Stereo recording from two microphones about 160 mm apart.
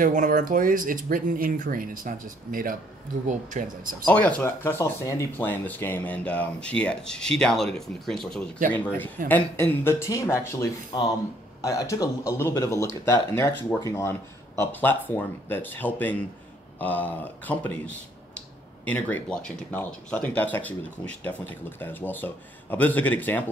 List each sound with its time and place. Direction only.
0.0 s speech: 55° right (ahead or behind)
4.0 s speech: 10° left (ahead or behind)